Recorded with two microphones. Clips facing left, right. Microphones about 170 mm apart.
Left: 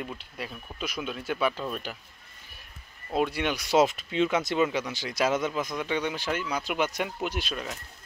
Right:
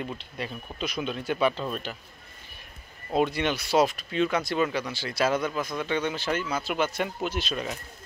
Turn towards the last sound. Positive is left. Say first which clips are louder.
# right 2 dB
turn(degrees=10)  # may be behind; listen again after turning